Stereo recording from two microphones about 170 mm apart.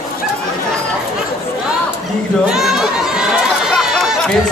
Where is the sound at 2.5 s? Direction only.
Centre (ahead or behind).